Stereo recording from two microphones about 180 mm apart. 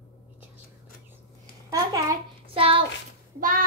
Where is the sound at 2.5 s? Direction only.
30° right (ahead or behind).